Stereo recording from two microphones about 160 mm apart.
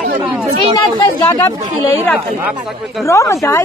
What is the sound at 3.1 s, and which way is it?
Speech, 20° left (ahead or behind).